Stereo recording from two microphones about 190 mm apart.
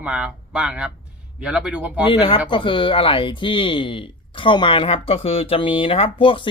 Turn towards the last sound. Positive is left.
turn(degrees=25)  # may be behind; listen again after turning